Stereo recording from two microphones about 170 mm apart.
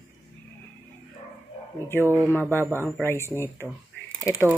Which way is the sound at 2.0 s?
15° right (ahead or behind).